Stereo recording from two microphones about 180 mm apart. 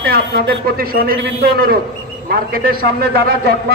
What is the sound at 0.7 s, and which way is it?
A man's voice, 55° right (ahead or behind).